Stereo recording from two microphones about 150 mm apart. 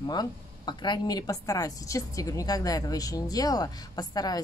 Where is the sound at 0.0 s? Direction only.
30° left (ahead or behind).